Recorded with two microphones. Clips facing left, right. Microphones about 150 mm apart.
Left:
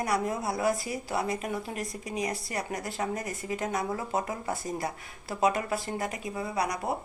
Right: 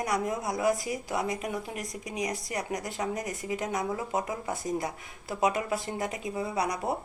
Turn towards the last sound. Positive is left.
turn(degrees=-25)  # may be behind; listen again after turning